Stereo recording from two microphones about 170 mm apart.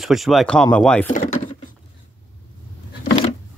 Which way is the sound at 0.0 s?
Centre (ahead or behind).